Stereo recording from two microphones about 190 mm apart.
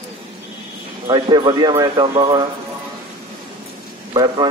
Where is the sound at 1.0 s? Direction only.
20° right (ahead or behind).